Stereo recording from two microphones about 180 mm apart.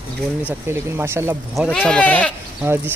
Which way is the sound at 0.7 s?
15° right (ahead or behind).